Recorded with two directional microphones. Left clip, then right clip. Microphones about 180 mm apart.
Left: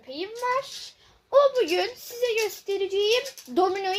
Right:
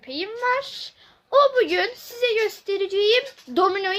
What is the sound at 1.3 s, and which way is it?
A woman's voice, 25° right (ahead or behind).